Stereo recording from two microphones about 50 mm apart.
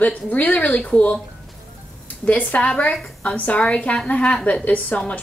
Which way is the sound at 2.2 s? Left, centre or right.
Left.